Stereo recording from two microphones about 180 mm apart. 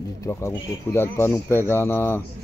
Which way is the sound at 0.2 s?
15° left (ahead or behind).